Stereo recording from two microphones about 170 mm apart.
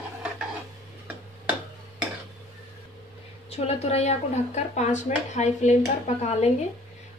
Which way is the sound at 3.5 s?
40° left (ahead or behind).